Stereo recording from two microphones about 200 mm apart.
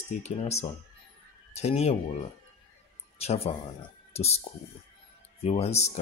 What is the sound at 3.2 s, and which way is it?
Speech, 30° left (ahead or behind).